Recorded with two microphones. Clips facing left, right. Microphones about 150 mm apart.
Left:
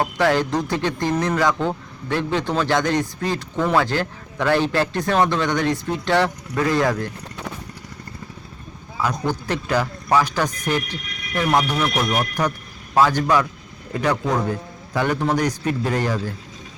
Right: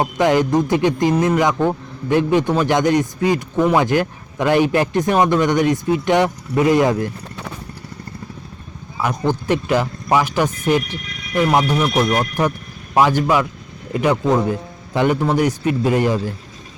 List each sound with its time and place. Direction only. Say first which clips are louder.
0.0 s speech: right 3 dB; 20° right (ahead or behind)
9.0 s speech: right 3 dB; 15° right (ahead or behind)